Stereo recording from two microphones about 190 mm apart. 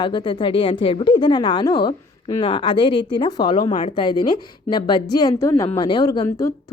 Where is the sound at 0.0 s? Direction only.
25° left (ahead or behind).